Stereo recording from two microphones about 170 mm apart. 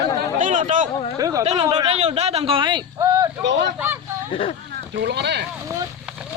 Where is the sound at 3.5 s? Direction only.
90° right.